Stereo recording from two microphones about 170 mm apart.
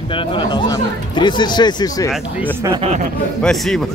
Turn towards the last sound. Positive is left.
turn(degrees=0)  # may be behind; listen again after turning